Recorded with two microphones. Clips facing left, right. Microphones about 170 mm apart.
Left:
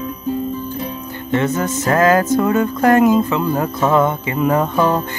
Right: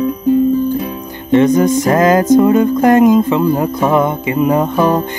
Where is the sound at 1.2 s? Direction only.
15° right (ahead or behind).